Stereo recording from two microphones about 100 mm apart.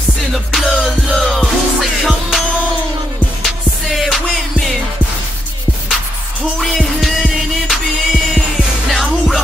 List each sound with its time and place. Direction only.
0.3 s music: centre (ahead or behind)
3.4 s music: centre (ahead or behind)
6.6 s music: centre (ahead or behind)